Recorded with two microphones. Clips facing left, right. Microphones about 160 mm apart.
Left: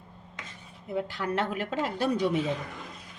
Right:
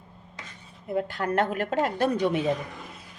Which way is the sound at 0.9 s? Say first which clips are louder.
Right 4 dB; 55° right (ahead or behind).